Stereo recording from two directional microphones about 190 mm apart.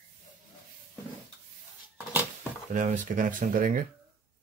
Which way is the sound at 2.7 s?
45° right (ahead or behind).